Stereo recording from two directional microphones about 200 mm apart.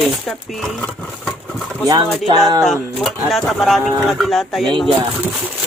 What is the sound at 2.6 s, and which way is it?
Speech, centre (ahead or behind).